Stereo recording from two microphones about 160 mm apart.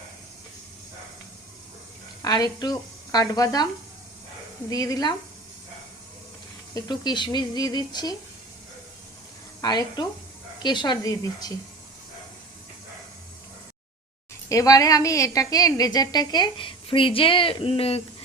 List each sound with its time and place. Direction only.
2.2 s speech: 25° left (ahead or behind)
4.7 s a woman's voice: 25° left (ahead or behind)
6.7 s a woman's voice: 25° left (ahead or behind)
9.6 s a woman's voice: 25° left (ahead or behind)
14.5 s a woman's voice: 20° left (ahead or behind); by 18.0 s 35° left (ahead or behind)